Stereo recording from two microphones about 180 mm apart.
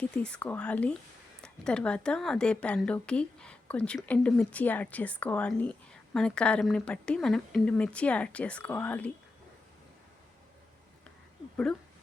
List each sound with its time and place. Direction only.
0.0 s speech: 5° left (ahead or behind)